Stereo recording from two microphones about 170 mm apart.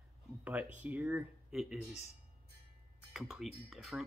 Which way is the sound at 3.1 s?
Centre (ahead or behind).